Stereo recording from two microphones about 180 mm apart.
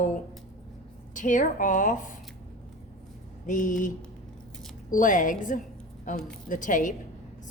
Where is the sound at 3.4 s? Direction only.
45° left (ahead or behind).